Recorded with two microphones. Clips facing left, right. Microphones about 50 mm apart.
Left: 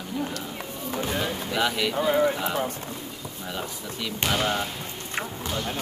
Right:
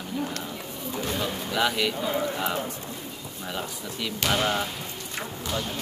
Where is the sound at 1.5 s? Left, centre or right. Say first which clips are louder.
Right 1 dB; centre.